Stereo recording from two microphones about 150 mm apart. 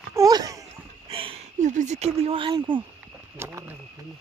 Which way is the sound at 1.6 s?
50° right (ahead or behind).